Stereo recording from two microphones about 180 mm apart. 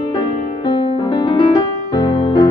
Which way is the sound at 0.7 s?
25° left (ahead or behind).